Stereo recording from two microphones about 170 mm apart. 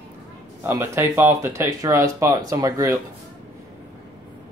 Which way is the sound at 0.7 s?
15° right (ahead or behind).